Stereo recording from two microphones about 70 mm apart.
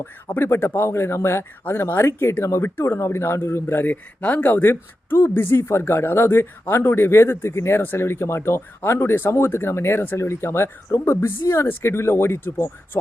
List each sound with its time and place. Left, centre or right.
0.3 s speech: left
4.2 s speech: left